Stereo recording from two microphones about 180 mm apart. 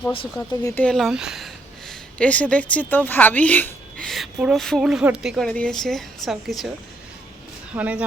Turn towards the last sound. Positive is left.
turn(degrees=-10)  # may be behind; listen again after turning